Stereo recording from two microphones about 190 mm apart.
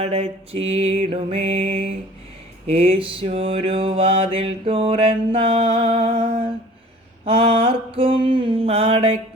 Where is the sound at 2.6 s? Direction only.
30° right (ahead or behind).